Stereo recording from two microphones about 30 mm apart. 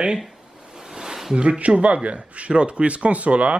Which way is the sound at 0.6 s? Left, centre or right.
Right.